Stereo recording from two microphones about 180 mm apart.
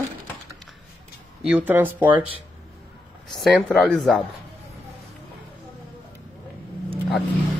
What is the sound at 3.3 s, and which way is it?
Speech, centre (ahead or behind).